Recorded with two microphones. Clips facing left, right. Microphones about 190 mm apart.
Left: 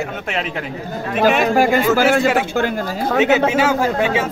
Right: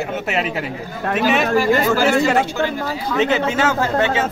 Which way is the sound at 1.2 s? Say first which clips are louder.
Left 3 dB; 50° left (ahead or behind).